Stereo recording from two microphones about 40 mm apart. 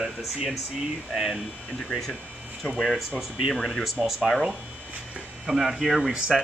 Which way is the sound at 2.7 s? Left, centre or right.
Centre.